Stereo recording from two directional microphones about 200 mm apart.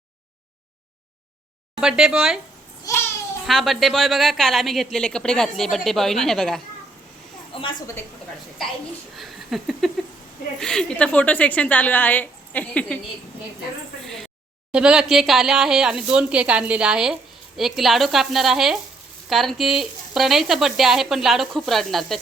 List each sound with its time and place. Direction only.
1.8 s speech: 5° right (ahead or behind)
2.8 s babbling: 15° left (ahead or behind)
3.4 s speech: centre (ahead or behind)
7.5 s speech: 25° left (ahead or behind)
9.1 s a sound: centre (ahead or behind)
10.6 s a woman's voice: 5° left (ahead or behind)
14.0 s speech: centre (ahead or behind)